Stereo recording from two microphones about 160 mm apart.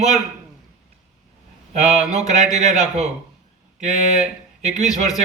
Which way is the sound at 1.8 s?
45° right (ahead or behind).